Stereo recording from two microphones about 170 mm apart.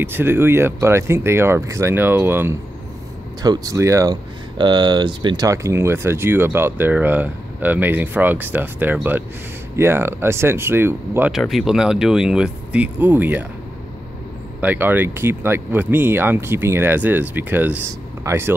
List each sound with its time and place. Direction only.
0.0 s speech: 15° right (ahead or behind)
11.3 s speech: centre (ahead or behind)
14.6 s speech: 10° right (ahead or behind)